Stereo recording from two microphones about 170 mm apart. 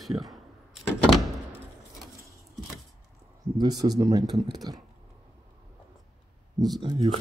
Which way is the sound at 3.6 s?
25° right (ahead or behind).